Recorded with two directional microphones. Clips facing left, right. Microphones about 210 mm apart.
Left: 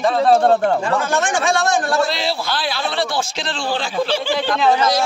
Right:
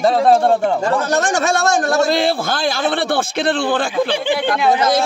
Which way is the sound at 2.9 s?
55° right (ahead or behind).